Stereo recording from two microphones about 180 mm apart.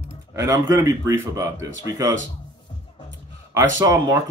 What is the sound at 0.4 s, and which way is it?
Speech, 15° right (ahead or behind).